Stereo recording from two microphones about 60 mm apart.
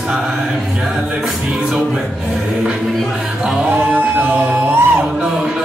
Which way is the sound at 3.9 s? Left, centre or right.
Right.